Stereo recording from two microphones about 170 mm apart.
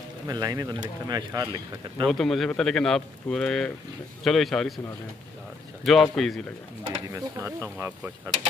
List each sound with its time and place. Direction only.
0.3 s speech: 25° right (ahead or behind)
2.0 s speech: centre (ahead or behind)
5.9 s speech: centre (ahead or behind)
7.1 s speech: 20° right (ahead or behind)